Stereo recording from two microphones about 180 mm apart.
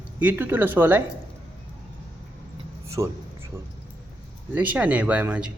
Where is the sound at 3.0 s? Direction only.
15° right (ahead or behind).